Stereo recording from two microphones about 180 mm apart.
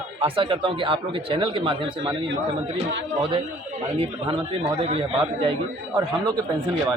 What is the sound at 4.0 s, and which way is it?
A man's voice, 30° right (ahead or behind).